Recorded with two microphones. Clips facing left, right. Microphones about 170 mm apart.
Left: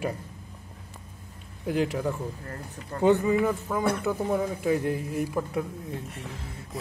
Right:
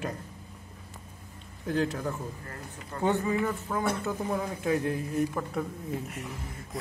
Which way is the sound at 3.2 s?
15° left (ahead or behind).